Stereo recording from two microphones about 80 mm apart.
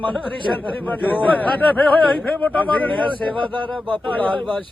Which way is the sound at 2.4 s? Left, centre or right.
Centre.